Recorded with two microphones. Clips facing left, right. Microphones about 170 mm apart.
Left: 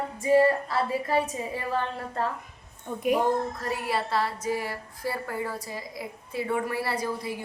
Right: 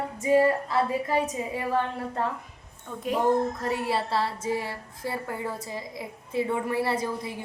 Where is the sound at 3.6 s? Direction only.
25° right (ahead or behind).